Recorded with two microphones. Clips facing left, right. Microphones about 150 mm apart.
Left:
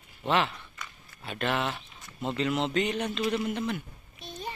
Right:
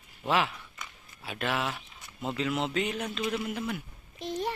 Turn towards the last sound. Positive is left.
turn(degrees=-90)